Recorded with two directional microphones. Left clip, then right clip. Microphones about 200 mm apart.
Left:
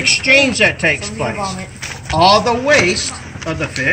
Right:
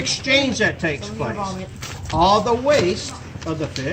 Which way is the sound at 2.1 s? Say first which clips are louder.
Left 5 dB; 5° right (ahead or behind).